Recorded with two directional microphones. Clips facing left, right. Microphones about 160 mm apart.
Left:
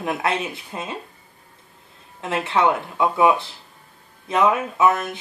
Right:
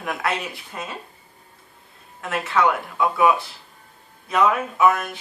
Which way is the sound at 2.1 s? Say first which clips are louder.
Left 1 dB; 25° left (ahead or behind).